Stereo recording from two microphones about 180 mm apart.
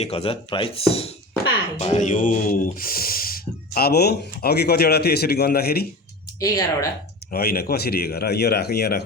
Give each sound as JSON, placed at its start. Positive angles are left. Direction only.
{"t": 0.0, "sound": "speech", "side_deg": 35}
{"t": 6.4, "sound": "speech", "side_deg": 15}
{"t": 7.3, "sound": "speech", "side_deg": 55}